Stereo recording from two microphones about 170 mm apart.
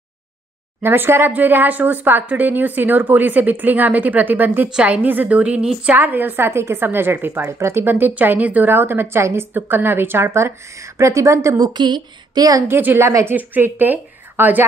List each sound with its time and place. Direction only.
0.8 s speech: 15° right (ahead or behind)